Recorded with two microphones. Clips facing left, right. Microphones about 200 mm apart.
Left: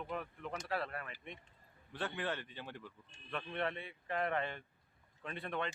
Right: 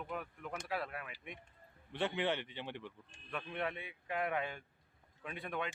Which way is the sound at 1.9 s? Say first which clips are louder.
Right 4 dB; 20° right (ahead or behind).